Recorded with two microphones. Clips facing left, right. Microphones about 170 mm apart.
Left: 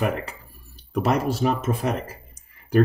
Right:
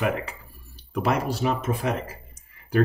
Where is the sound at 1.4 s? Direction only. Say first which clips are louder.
Left 2 dB; 40° left (ahead or behind).